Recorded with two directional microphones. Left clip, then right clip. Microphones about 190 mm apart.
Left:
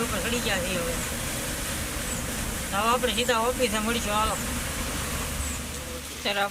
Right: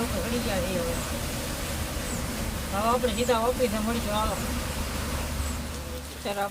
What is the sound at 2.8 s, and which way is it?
Speech, 5° right (ahead or behind).